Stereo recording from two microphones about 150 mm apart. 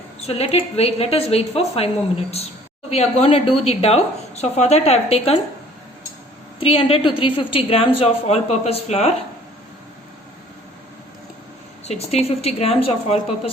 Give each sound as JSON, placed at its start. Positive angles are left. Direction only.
{"t": 0.2, "sound": "a woman's voice", "side_deg": 45}
{"t": 6.6, "sound": "a woman's voice", "side_deg": 40}
{"t": 11.9, "sound": "a woman's voice", "side_deg": 45}